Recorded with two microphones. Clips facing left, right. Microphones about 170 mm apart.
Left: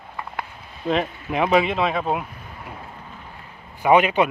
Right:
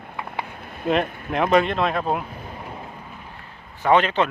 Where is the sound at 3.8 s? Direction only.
10° left (ahead or behind).